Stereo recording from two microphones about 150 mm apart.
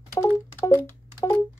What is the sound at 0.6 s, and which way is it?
Music, 20° left (ahead or behind).